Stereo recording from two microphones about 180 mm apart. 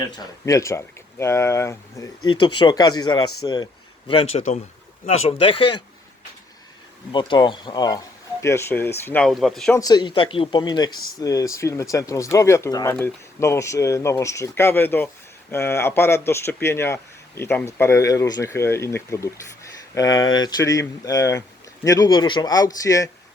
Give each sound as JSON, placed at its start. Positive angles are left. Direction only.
{"t": 0.0, "sound": "speech", "side_deg": 20}
{"t": 4.1, "sound": "speech", "side_deg": 35}
{"t": 7.1, "sound": "speech", "side_deg": 25}
{"t": 9.7, "sound": "speech", "side_deg": 20}